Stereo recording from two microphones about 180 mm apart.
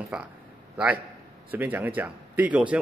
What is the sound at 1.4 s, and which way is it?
Speech, 10° right (ahead or behind).